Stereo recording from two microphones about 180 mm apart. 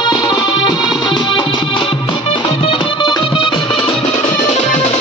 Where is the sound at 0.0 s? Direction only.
25° left (ahead or behind).